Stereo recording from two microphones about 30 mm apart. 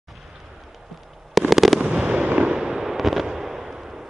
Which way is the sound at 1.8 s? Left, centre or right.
Right.